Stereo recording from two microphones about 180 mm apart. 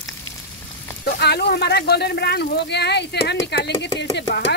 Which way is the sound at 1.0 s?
65° left (ahead or behind).